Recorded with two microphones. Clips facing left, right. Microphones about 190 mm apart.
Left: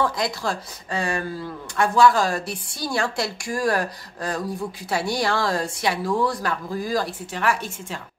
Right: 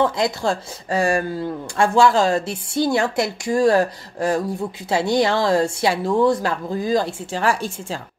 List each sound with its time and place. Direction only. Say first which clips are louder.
0.0 s speech: right 5 dB; 25° right (ahead or behind)
0.8 s speech: right 7 dB; 35° right (ahead or behind)